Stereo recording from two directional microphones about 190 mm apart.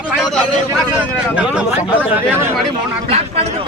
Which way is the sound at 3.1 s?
35° right (ahead or behind).